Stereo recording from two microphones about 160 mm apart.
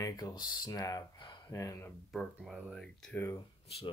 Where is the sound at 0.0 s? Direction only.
25° left (ahead or behind).